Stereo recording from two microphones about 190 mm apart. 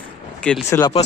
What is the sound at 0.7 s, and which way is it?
Speech, 20° left (ahead or behind).